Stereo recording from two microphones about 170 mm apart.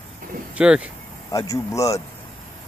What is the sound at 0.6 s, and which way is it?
Speech, 5° right (ahead or behind).